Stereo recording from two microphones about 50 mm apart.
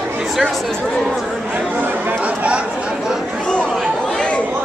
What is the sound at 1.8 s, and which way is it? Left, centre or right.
Chatter, right.